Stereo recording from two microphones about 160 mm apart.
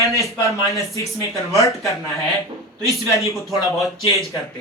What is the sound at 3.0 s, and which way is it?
Speech, 20° left (ahead or behind).